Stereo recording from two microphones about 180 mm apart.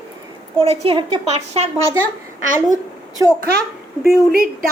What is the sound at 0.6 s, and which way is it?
A woman's voice, 30° right (ahead or behind).